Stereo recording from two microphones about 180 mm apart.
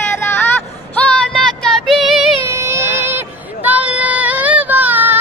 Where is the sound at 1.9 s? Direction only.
Centre (ahead or behind).